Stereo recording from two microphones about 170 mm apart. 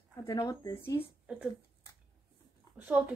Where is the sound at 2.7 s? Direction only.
10° right (ahead or behind).